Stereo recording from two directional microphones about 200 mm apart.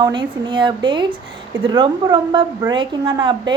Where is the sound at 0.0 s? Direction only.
20° right (ahead or behind).